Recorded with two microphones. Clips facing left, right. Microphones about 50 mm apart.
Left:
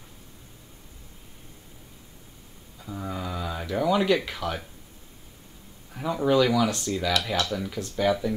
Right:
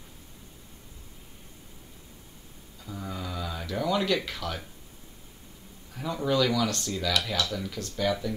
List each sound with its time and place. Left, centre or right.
2.8 s speech: centre
5.9 s speech: centre